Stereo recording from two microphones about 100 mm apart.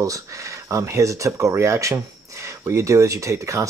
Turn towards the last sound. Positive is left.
turn(degrees=-30)  # may be behind; listen again after turning